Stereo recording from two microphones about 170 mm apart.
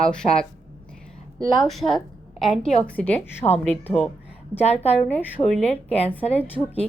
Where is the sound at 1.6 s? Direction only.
Centre (ahead or behind).